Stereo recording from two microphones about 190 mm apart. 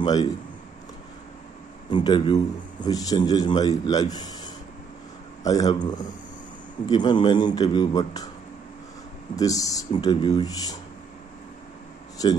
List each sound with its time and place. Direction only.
0.0 s a man's voice: 20° left (ahead or behind)
1.9 s a man's voice: 25° left (ahead or behind)
5.4 s a man's voice: 20° left (ahead or behind)
9.3 s a man's voice: 20° left (ahead or behind)
12.2 s a man's voice: 20° left (ahead or behind)